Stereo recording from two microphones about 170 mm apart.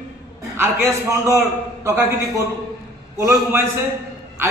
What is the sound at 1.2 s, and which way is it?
A man's voice, 15° right (ahead or behind).